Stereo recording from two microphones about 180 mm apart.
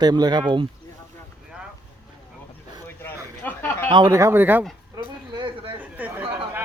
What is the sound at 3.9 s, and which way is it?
Speech, 20° right (ahead or behind).